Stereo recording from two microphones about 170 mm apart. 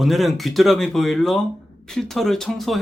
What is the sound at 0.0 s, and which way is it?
A man's voice, centre (ahead or behind).